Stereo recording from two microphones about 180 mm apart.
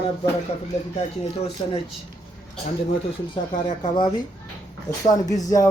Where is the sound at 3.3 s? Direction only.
25° left (ahead or behind).